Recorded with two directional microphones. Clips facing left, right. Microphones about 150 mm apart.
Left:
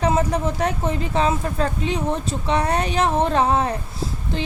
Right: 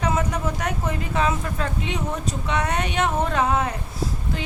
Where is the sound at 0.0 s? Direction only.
30° left (ahead or behind).